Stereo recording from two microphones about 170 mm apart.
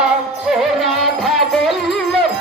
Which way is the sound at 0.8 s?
Centre (ahead or behind).